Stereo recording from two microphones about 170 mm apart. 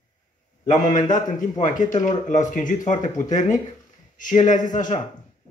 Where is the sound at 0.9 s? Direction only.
50° left (ahead or behind).